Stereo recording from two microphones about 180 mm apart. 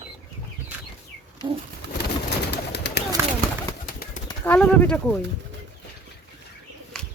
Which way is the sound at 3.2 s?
15° right (ahead or behind).